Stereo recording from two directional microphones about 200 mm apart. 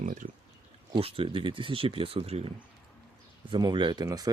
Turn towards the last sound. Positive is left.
turn(degrees=-20)  # may be behind; listen again after turning